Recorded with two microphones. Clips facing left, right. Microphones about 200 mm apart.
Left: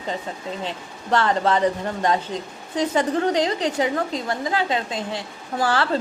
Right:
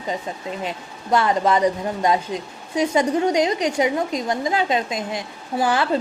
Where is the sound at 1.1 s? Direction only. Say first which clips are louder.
Right 2 dB; 10° right (ahead or behind).